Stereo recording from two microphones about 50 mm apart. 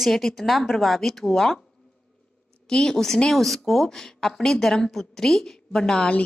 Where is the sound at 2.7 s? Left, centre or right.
Centre.